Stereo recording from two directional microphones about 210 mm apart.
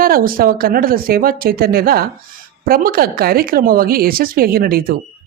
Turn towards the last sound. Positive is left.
turn(degrees=-45)  # may be behind; listen again after turning